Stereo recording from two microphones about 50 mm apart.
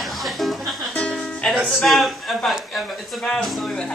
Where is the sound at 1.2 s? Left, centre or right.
Centre.